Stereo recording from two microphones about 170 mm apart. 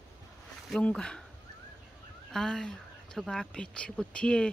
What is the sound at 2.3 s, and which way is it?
Speech, 5° left (ahead or behind).